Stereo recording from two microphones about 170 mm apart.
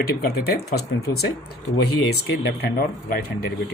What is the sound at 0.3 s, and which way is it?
Speech, 70° left (ahead or behind).